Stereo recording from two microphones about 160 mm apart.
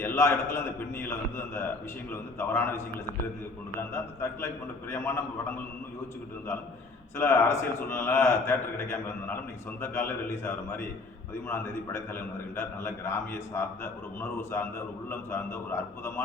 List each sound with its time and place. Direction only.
0.0 s a man's voice: 15° left (ahead or behind)
7.2 s a man's voice: 15° left (ahead or behind)